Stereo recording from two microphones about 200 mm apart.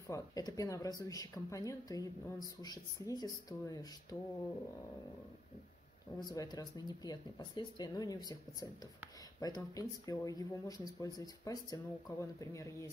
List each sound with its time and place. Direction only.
0.1 s speech: 15° left (ahead or behind)
6.1 s speech: 20° left (ahead or behind)